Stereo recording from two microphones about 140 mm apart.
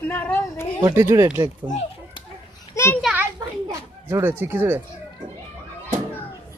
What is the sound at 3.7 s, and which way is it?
Speech, 20° right (ahead or behind).